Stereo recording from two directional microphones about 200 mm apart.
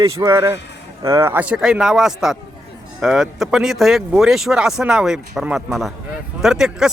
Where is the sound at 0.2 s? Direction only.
15° right (ahead or behind).